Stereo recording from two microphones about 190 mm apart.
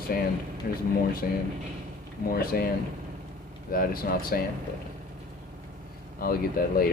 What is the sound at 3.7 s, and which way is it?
Speech, 50° left (ahead or behind).